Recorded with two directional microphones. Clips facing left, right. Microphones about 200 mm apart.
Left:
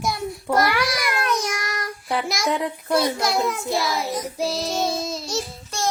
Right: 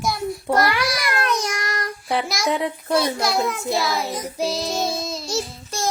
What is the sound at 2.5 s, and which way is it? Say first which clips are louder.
Speech: right 1 dB; 10° right (ahead or behind).